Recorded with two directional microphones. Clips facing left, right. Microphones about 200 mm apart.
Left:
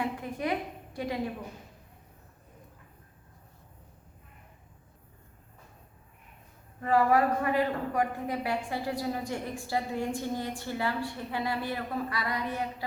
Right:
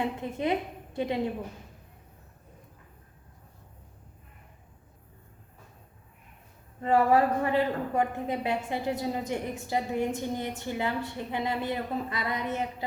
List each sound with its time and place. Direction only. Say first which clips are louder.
0.0 s speech: right 2 dB; 25° right (ahead or behind)
6.8 s speech: right 2 dB; 25° right (ahead or behind)